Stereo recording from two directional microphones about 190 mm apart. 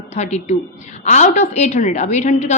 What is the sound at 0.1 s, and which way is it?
A woman's voice, 35° left (ahead or behind).